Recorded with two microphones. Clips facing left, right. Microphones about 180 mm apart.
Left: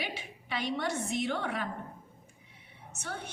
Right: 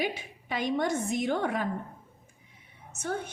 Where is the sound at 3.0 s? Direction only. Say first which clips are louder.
Right 8 dB; 45° right (ahead or behind).